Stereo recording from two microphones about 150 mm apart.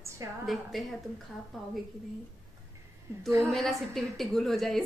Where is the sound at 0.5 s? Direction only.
Centre (ahead or behind).